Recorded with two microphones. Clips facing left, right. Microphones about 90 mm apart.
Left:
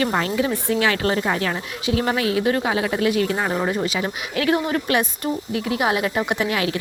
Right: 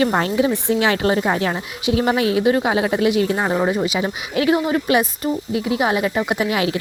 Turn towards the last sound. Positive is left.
turn(degrees=-15)  # may be behind; listen again after turning